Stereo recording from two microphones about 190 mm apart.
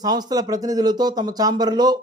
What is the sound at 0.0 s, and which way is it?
A man's voice, 20° right (ahead or behind).